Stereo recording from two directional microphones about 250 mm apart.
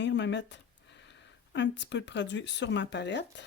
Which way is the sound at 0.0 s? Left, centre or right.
Left.